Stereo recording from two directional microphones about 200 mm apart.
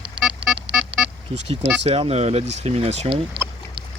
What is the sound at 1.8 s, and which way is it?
Speech, 30° right (ahead or behind).